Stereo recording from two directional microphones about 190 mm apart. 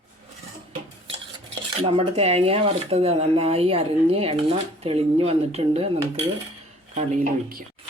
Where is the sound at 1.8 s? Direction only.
30° right (ahead or behind).